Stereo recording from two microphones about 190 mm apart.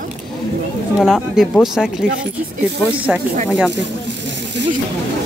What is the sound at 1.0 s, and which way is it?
Speech, centre (ahead or behind).